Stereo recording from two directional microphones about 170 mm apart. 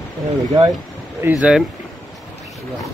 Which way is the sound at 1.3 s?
5° right (ahead or behind).